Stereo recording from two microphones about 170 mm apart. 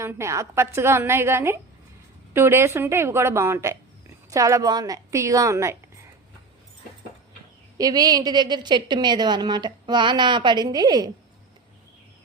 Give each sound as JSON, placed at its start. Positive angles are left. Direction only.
{"t": 0.0, "sound": "a woman's voice", "side_deg": -15}
{"t": 7.8, "sound": "a woman's voice", "side_deg": -20}